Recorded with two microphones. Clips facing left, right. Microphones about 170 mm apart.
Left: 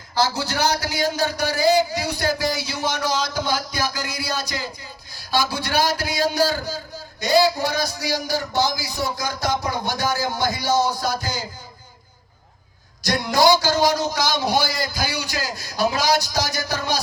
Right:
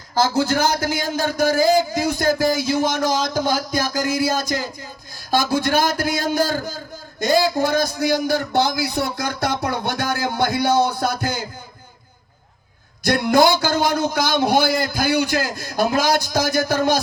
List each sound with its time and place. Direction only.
0.1 s a man's voice: 50° right (ahead or behind)
13.0 s a man's voice: 55° right (ahead or behind)